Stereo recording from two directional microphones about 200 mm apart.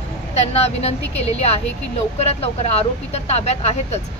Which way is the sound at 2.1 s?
30° left (ahead or behind).